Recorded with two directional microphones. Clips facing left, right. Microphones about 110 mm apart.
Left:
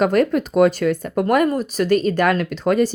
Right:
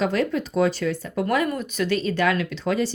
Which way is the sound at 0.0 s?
50° left (ahead or behind).